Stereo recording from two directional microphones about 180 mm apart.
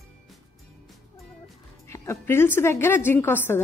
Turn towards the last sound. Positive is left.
turn(degrees=10)  # may be behind; listen again after turning